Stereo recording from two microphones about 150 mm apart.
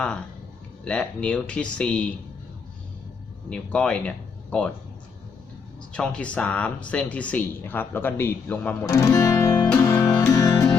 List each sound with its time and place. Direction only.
0.9 s speech: 10° left (ahead or behind)
3.5 s speech: 5° left (ahead or behind)
5.9 s speech: 5° left (ahead or behind)
9.7 s music: 20° left (ahead or behind)